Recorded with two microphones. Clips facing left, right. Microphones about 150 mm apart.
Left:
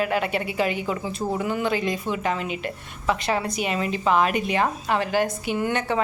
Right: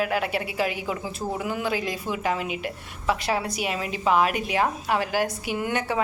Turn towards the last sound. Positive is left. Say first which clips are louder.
# left 2 dB
turn(degrees=-5)  # may be behind; listen again after turning